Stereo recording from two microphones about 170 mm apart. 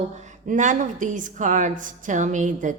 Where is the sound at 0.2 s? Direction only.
45° right (ahead or behind).